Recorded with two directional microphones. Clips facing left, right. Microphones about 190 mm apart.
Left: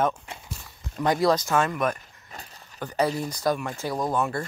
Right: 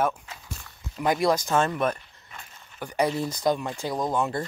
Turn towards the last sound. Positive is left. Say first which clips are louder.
# even
turn(degrees=-20)  # may be behind; listen again after turning